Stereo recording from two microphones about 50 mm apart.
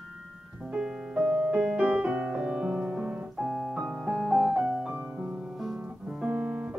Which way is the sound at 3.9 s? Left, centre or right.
Right.